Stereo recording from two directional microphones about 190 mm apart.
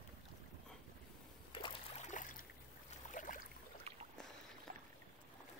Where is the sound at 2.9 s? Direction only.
45° left (ahead or behind).